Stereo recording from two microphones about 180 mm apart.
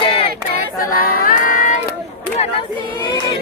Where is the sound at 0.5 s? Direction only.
50° left (ahead or behind).